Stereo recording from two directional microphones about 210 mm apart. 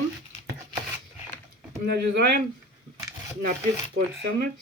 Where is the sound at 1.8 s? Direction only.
55° right (ahead or behind).